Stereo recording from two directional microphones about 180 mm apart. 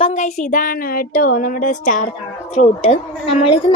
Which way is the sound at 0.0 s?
40° left (ahead or behind).